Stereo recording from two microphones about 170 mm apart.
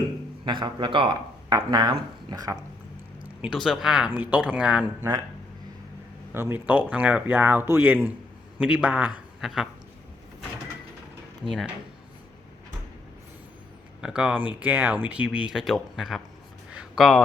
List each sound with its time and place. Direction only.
0.4 s speech: 25° right (ahead or behind)
3.4 s speech: 5° right (ahead or behind)
6.3 s a man's voice: 10° right (ahead or behind)
14.0 s speech: 5° right (ahead or behind)
16.7 s a sound: centre (ahead or behind)